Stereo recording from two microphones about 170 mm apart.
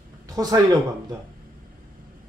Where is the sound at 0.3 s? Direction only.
20° right (ahead or behind).